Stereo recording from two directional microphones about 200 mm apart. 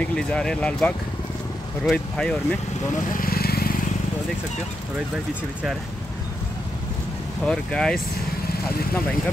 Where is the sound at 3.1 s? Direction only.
45° left (ahead or behind).